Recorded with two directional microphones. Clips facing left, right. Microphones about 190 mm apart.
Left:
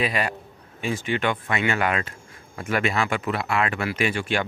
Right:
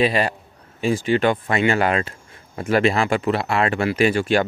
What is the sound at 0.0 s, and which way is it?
Speech, 30° right (ahead or behind).